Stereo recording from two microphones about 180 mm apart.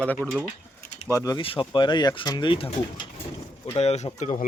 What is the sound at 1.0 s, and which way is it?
Speech, 15° left (ahead or behind).